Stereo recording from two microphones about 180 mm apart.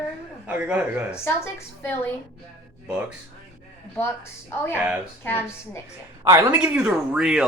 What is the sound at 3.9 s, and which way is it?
A woman's voice, 15° left (ahead or behind).